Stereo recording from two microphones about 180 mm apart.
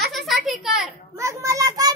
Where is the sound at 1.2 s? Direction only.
15° right (ahead or behind).